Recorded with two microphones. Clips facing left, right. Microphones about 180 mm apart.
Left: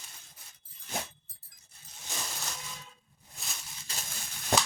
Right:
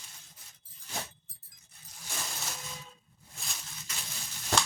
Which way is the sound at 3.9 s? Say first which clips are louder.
Left 2 dB; 30° left (ahead or behind).